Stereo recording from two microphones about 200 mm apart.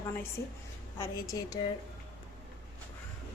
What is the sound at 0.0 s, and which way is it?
A woman's voice, 15° left (ahead or behind).